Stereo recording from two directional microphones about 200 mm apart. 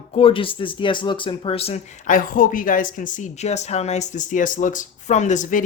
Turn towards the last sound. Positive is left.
turn(degrees=40)  # may be behind; listen again after turning